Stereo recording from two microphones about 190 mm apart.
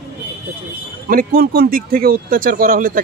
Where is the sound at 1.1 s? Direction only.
50° right (ahead or behind).